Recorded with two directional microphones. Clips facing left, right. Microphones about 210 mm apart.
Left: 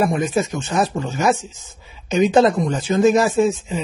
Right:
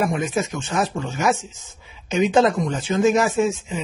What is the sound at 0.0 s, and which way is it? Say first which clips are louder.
Speech: left 3 dB; 35° left (ahead or behind).